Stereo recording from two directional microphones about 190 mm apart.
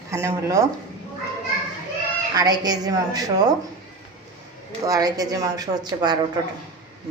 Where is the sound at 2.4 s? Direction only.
20° right (ahead or behind).